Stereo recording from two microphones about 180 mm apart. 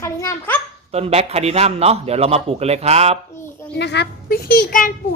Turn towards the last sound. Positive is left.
turn(degrees=55)  # may be behind; listen again after turning